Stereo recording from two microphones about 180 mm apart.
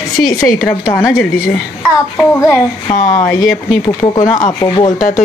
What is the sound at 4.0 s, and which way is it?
Speech, 20° left (ahead or behind).